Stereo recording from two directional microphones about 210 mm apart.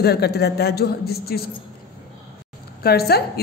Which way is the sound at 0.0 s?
50° left (ahead or behind).